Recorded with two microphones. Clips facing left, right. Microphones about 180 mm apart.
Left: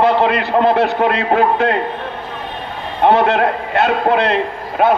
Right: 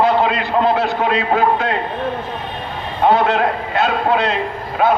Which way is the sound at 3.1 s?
65° left (ahead or behind).